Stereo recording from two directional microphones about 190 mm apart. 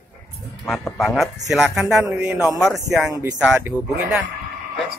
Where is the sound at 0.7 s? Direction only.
Centre (ahead or behind).